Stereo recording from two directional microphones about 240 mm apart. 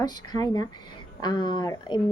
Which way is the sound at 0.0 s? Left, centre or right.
Centre.